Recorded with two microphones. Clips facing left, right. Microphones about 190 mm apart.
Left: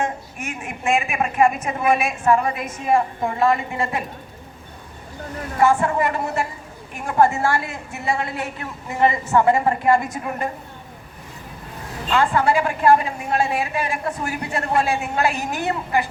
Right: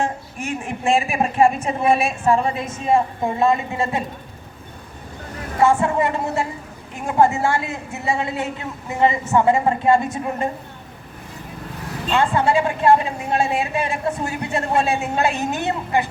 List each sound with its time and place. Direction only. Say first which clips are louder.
0.0 s a woman's voice: right 1 dB; 30° right (ahead or behind)
5.8 s a woman's voice: right 1 dB; 25° right (ahead or behind)
12.1 s a woman's voice: even; 25° right (ahead or behind)